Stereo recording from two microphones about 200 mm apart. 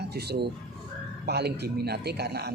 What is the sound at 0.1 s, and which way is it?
A man's voice, 55° right (ahead or behind).